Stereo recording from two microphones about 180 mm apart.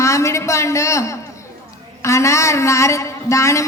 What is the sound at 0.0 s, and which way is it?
A man's voice, 15° left (ahead or behind).